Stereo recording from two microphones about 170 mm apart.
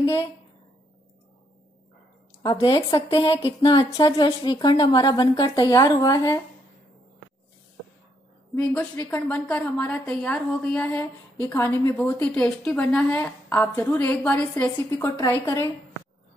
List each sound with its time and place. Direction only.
0.0 s a woman's voice: 20° left (ahead or behind)
2.4 s speech: 25° left (ahead or behind)
8.7 s speech: 10° left (ahead or behind)